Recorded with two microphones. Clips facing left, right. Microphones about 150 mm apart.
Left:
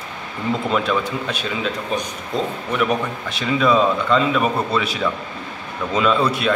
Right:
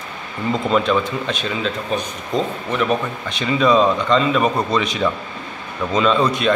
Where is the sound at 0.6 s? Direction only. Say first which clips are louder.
Right 4 dB; 5° left (ahead or behind).